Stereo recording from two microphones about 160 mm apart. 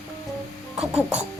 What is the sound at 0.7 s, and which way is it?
Speech, 5° right (ahead or behind).